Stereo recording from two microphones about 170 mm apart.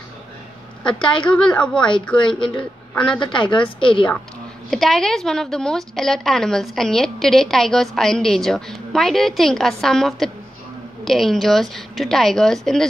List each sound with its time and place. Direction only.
0.9 s a woman's voice: 30° left (ahead or behind)
1.2 s a woman's voice: 5° left (ahead or behind)
3.3 s a woman's voice: 30° left (ahead or behind)
4.6 s a woman's voice: centre (ahead or behind)